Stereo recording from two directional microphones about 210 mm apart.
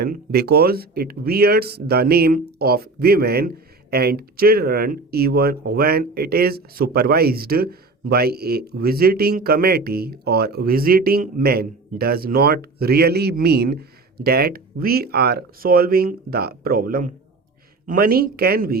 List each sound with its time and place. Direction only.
0.0 s speech: 45° right (ahead or behind)